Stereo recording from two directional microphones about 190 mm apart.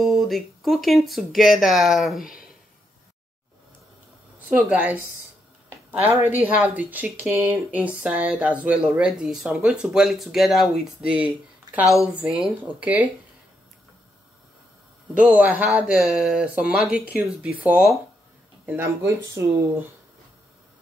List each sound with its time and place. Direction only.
0.0 s speech: centre (ahead or behind)
4.5 s speech: 10° right (ahead or behind)
6.0 s speech: 10° right (ahead or behind)
15.1 s speech: 10° right (ahead or behind)